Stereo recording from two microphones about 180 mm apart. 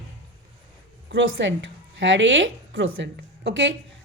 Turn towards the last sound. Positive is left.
turn(degrees=-90)